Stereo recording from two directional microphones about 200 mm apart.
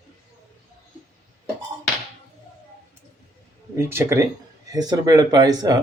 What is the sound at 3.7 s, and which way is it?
Speech, 10° right (ahead or behind).